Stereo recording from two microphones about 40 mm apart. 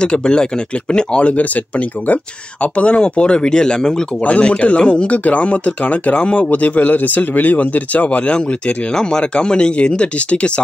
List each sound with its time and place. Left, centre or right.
0.0 s speech: left
1.3 s speech: left; by 4.0 s centre
4.2 s speech: left
8.3 s speech: left